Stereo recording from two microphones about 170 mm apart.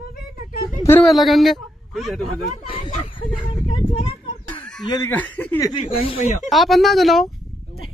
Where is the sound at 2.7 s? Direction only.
45° left (ahead or behind).